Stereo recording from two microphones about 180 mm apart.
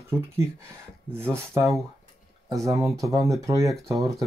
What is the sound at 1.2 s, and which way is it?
Speech, 15° right (ahead or behind).